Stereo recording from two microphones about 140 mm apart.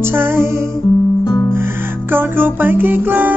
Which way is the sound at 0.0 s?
15° right (ahead or behind).